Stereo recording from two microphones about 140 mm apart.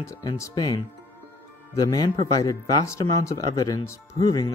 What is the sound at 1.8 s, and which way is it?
Speech, 25° left (ahead or behind).